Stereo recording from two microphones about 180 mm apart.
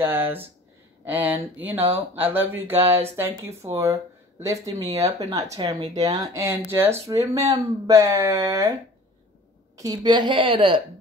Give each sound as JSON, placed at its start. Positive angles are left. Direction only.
{"t": 0.0, "sound": "speech", "side_deg": -10}
{"t": 9.8, "sound": "a woman's voice", "side_deg": -20}